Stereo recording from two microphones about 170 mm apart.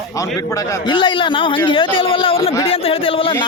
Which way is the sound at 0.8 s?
30° left (ahead or behind).